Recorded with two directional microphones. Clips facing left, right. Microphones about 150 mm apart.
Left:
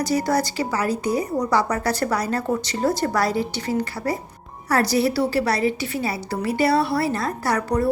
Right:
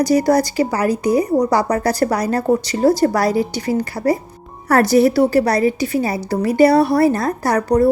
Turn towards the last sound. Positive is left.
turn(degrees=-40)  # may be behind; listen again after turning